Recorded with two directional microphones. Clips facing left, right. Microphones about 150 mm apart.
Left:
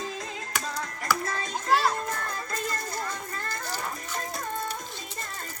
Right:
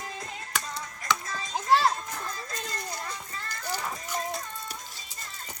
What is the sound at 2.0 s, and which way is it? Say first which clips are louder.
Music: left 4 dB; 60° left (ahead or behind).